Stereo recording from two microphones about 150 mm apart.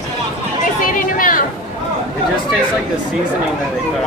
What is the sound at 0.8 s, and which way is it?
Chatter, 65° left (ahead or behind).